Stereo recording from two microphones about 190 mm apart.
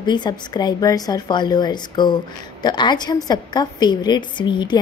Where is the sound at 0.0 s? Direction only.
25° left (ahead or behind).